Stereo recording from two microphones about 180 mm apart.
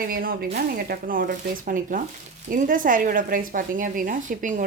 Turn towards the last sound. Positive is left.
turn(degrees=-45)  # may be behind; listen again after turning